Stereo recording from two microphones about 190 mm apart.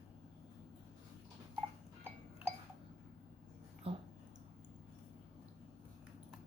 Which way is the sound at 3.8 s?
30° right (ahead or behind).